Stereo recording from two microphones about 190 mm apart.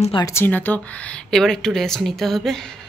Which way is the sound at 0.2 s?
15° left (ahead or behind).